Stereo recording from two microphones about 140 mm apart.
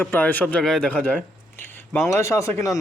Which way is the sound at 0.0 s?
15° left (ahead or behind).